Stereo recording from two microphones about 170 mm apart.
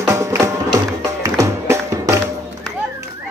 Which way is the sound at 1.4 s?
20° right (ahead or behind).